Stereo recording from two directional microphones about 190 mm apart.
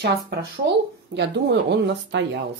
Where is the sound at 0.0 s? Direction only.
60° right (ahead or behind).